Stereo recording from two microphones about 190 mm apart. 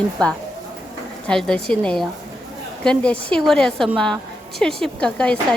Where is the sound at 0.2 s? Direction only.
5° left (ahead or behind).